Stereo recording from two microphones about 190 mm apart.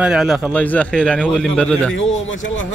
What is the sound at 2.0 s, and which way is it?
Speech, 90° left.